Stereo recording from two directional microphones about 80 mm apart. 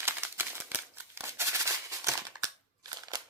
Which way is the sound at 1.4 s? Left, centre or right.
Right.